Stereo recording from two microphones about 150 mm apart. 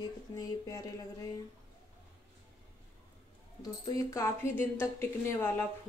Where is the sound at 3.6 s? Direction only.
25° left (ahead or behind).